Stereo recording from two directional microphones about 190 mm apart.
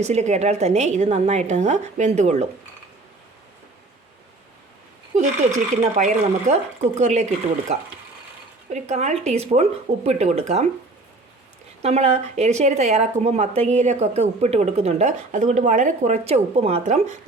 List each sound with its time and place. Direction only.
0.0 s speech: 35° right (ahead or behind)
5.1 s speech: 35° right (ahead or behind)
8.7 s speech: 35° right (ahead or behind)
11.8 s speech: 35° right (ahead or behind)